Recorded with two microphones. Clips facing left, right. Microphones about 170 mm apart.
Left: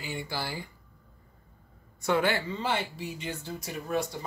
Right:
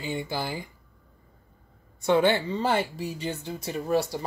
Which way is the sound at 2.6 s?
40° right (ahead or behind).